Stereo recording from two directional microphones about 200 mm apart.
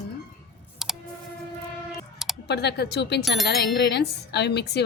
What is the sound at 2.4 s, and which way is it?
Music, 55° left (ahead or behind).